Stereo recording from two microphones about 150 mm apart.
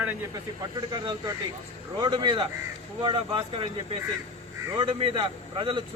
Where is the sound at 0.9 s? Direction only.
25° right (ahead or behind).